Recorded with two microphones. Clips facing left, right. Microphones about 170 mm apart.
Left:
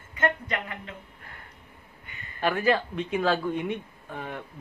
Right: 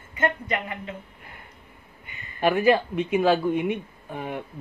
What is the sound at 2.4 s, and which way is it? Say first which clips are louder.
Speech: right 5 dB; 15° right (ahead or behind).